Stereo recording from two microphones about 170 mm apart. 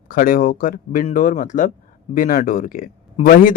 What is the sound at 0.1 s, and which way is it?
Speech, 55° left (ahead or behind).